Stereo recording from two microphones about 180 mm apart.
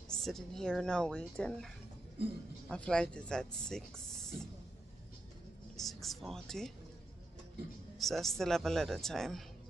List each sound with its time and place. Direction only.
0.1 s speech: 5° left (ahead or behind)
2.7 s speech: 5° left (ahead or behind)
5.8 s speech: centre (ahead or behind)
8.0 s speech: centre (ahead or behind)